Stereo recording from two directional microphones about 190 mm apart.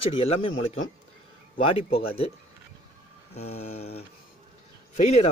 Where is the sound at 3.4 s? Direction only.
35° left (ahead or behind).